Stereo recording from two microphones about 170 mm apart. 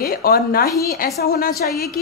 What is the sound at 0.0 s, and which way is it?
Speech, 60° left (ahead or behind).